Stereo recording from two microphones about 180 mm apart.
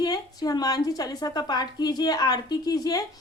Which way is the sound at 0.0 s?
20° left (ahead or behind).